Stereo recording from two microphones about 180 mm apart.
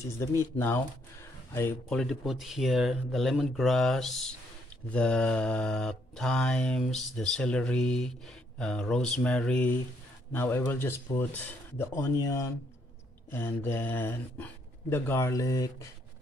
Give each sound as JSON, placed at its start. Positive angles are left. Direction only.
{"t": 0.2, "sound": "speech", "side_deg": 15}
{"t": 1.5, "sound": "mantra", "side_deg": 10}
{"t": 10.3, "sound": "speech", "side_deg": 10}